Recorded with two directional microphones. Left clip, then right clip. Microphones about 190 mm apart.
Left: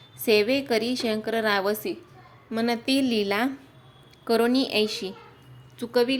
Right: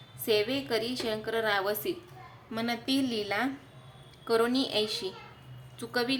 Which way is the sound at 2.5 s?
35° left (ahead or behind).